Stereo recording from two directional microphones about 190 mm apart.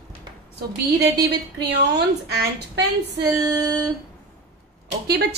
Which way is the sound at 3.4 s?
20° right (ahead or behind).